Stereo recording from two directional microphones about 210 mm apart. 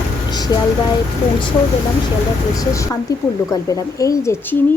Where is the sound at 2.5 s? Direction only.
15° left (ahead or behind).